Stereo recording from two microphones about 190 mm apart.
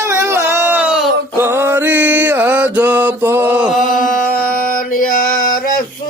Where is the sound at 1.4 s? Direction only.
10° right (ahead or behind).